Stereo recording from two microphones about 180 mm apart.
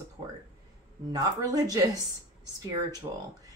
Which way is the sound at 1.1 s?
20° right (ahead or behind).